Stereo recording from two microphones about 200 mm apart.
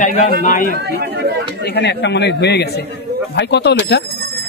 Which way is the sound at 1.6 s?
60° left (ahead or behind).